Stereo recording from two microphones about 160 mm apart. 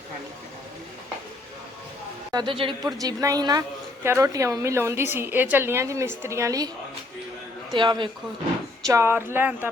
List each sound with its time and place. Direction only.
2.3 s a woman's voice: 30° right (ahead or behind)
7.7 s a woman's voice: 30° right (ahead or behind)
8.9 s a woman's voice: 15° right (ahead or behind)